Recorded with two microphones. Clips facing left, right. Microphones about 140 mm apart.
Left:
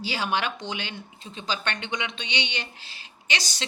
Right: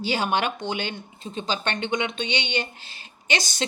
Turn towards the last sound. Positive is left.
turn(degrees=-45)  # may be behind; listen again after turning